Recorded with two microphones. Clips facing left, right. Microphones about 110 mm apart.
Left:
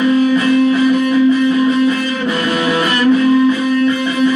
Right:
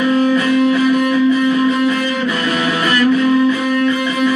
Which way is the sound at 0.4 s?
30° left (ahead or behind).